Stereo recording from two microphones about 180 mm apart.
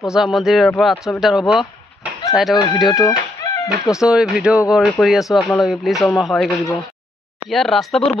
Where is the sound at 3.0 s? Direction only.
20° left (ahead or behind).